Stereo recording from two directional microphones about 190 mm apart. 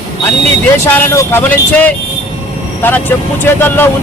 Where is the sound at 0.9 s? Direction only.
15° left (ahead or behind).